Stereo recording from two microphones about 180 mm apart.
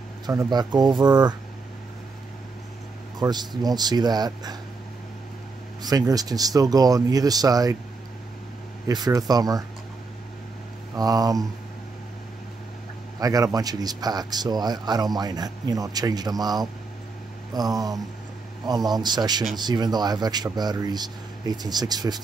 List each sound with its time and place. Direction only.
0.3 s speech: 20° right (ahead or behind)
3.2 s speech: 20° right (ahead or behind)
5.8 s speech: 20° right (ahead or behind)
8.8 s speech: 20° right (ahead or behind)
11.0 s speech: 20° right (ahead or behind)
13.2 s speech: 20° right (ahead or behind)